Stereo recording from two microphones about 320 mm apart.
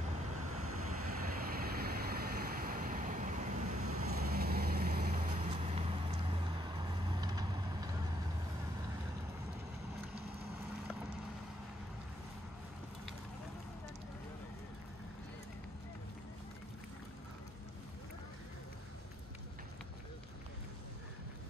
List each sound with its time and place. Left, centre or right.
0.5 s vehicle: right
1.0 s vehicle: right
3.8 s vehicle: right
4.1 s vehicle: right; by 7.9 s centre